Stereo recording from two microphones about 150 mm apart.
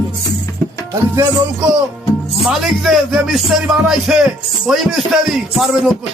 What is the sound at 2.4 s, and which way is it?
Speech, centre (ahead or behind).